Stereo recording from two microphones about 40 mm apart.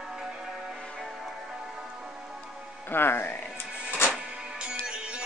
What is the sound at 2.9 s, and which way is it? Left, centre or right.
Speech, left.